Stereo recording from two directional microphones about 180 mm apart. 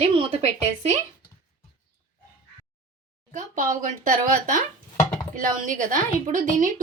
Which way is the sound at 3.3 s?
45° right (ahead or behind).